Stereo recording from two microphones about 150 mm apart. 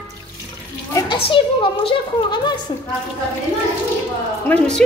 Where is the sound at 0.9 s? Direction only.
20° left (ahead or behind).